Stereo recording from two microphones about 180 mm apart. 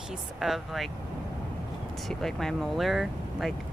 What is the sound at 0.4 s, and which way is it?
Speech, centre (ahead or behind).